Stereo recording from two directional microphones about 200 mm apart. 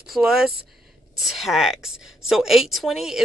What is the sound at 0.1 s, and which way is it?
A woman's voice, 5° right (ahead or behind).